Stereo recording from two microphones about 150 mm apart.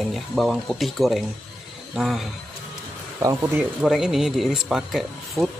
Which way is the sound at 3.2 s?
20° right (ahead or behind).